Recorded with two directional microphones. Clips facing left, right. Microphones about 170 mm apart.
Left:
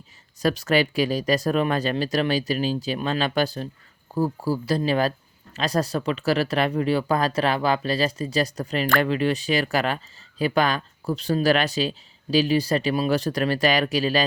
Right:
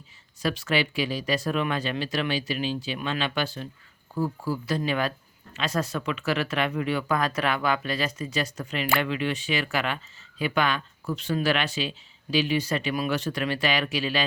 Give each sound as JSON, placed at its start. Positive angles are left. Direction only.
{"t": 0.4, "sound": "speech", "side_deg": 40}